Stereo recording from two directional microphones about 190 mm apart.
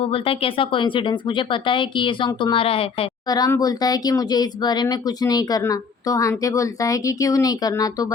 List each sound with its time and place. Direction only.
0.1 s speech: 30° left (ahead or behind)